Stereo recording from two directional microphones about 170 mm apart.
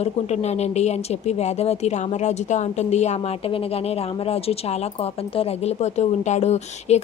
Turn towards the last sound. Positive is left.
turn(degrees=40)  # may be behind; listen again after turning